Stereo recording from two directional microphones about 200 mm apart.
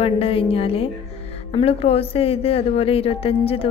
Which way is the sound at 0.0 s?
30° left (ahead or behind).